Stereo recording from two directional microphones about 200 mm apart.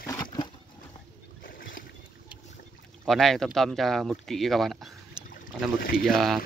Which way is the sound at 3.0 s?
Centre (ahead or behind).